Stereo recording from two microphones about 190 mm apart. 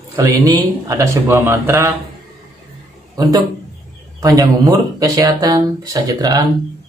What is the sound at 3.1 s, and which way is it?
A man's voice, 20° right (ahead or behind).